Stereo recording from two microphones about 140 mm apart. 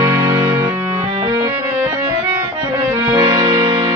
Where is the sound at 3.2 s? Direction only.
30° right (ahead or behind).